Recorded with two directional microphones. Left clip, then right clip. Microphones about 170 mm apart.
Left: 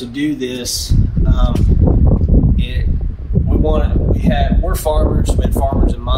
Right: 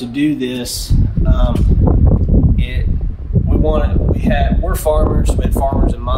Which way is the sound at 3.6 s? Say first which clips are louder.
Right 1 dB; 20° right (ahead or behind).